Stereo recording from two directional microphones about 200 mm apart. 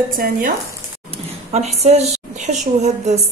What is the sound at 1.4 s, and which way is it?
A woman's voice, 35° right (ahead or behind).